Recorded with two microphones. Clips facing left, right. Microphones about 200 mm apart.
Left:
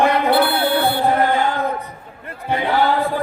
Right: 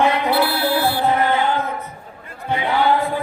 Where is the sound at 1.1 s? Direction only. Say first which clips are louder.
Left 1 dB; 50° left (ahead or behind).